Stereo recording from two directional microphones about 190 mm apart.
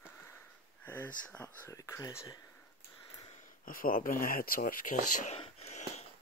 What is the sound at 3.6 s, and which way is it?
Speech, 50° left (ahead or behind).